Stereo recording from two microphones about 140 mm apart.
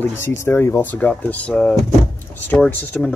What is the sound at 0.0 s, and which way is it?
Speech, 15° left (ahead or behind).